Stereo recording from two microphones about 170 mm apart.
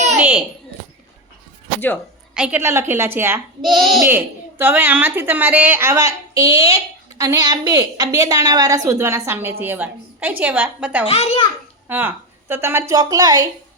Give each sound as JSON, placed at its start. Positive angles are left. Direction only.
{"t": 0.2, "sound": "a child's voice", "side_deg": -10}
{"t": 2.3, "sound": "a woman's voice", "side_deg": -5}
{"t": 3.6, "sound": "a child's voice", "side_deg": 0}
{"t": 4.1, "sound": "a woman's voice", "side_deg": -15}
{"t": 11.0, "sound": "a child's voice", "side_deg": 35}
{"t": 11.9, "sound": "a woman's voice", "side_deg": -15}